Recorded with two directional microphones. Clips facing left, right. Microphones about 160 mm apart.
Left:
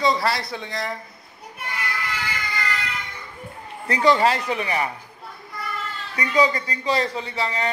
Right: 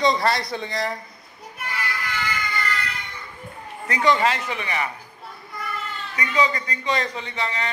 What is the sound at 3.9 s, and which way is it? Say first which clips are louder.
A man's voice: left 2 dB; 35° left (ahead or behind).